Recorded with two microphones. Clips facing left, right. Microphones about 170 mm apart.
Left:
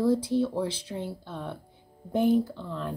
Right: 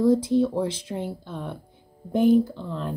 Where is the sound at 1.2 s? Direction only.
45° right (ahead or behind).